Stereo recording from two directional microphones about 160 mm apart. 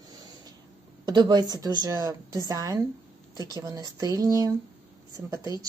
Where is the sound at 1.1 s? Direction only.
25° right (ahead or behind).